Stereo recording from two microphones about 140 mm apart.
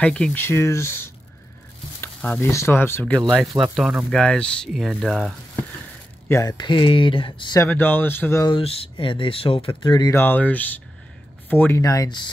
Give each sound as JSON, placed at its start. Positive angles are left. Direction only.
{"t": 0.0, "sound": "speech", "side_deg": 10}
{"t": 3.5, "sound": "speech", "side_deg": -5}
{"t": 6.2, "sound": "speech", "side_deg": 20}
{"t": 6.5, "sound": "speech", "side_deg": 35}
{"t": 7.6, "sound": "speech", "side_deg": 15}
{"t": 8.5, "sound": "speech", "side_deg": 40}
{"t": 10.1, "sound": "speech", "side_deg": 15}